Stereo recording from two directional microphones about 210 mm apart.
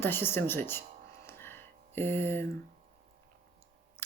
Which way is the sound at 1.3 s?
10° left (ahead or behind).